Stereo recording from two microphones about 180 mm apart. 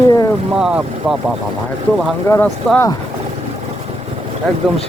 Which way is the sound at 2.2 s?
15° left (ahead or behind).